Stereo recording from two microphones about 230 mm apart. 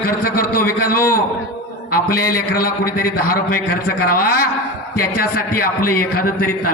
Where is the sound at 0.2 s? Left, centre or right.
Left.